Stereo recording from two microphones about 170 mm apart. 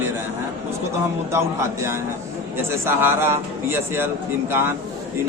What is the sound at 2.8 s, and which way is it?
Speech, 15° right (ahead or behind).